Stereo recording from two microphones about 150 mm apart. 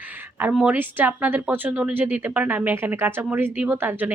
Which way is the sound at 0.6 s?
10° right (ahead or behind).